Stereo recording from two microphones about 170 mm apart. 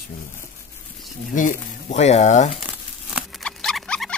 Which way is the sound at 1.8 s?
40° left (ahead or behind).